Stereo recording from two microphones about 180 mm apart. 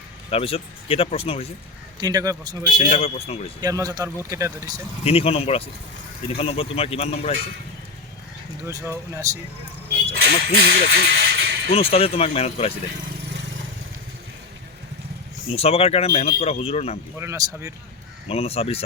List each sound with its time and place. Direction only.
0.3 s speech: 30° left (ahead or behind)
2.0 s a man's voice: 20° right (ahead or behind)
2.9 s speech: 35° left (ahead or behind)
3.6 s a man's voice: 20° right (ahead or behind)
5.0 s speech: 30° left (ahead or behind)
8.6 s a man's voice: 15° right (ahead or behind)
10.6 s speech: 65° right (ahead or behind)
11.7 s speech: 35° left (ahead or behind)
15.4 s speech: 35° left (ahead or behind)
17.2 s speech: 15° right (ahead or behind)
18.3 s speech: 35° left (ahead or behind)